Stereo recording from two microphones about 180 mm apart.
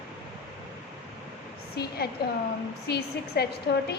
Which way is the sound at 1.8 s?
65° left (ahead or behind).